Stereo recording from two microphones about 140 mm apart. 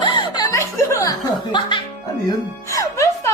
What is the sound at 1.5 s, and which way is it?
Speech, 35° left (ahead or behind).